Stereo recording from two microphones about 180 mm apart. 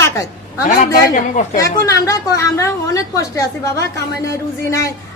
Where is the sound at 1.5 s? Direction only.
20° left (ahead or behind).